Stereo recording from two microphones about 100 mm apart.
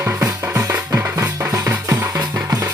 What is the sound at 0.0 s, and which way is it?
Music, 20° right (ahead or behind).